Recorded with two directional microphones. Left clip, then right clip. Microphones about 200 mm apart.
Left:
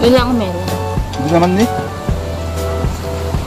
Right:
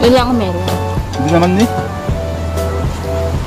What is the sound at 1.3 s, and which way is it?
Speech, 15° left (ahead or behind).